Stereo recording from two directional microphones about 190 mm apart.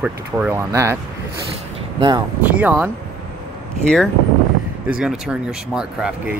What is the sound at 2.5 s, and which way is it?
Speech, 5° right (ahead or behind).